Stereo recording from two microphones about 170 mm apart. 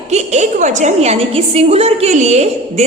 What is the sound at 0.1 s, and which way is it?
A woman's voice, 40° right (ahead or behind).